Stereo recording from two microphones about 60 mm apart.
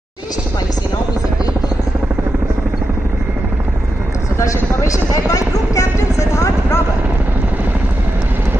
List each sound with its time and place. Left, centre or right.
4.8 s speech: left